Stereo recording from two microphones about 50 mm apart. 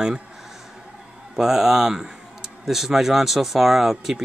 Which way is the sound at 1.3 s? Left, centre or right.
Centre.